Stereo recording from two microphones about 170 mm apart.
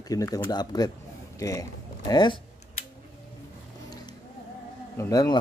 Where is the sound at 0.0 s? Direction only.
20° left (ahead or behind).